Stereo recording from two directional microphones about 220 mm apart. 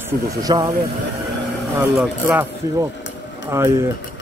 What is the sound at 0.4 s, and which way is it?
Speech, 15° right (ahead or behind).